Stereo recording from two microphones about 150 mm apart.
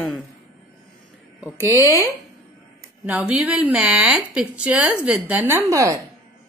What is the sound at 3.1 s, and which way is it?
A woman's voice, 10° right (ahead or behind).